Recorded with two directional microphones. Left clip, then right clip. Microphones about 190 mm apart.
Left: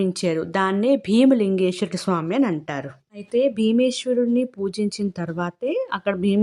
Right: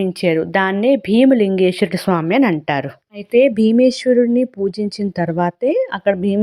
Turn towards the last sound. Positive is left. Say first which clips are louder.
# right 5 dB
turn(degrees=-10)  # may be behind; listen again after turning